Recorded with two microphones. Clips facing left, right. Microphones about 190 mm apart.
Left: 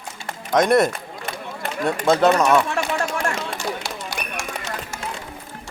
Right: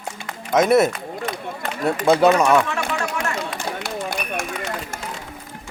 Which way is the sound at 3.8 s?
55° right (ahead or behind).